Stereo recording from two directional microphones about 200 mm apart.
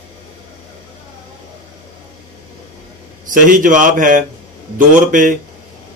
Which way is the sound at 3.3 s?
40° right (ahead or behind).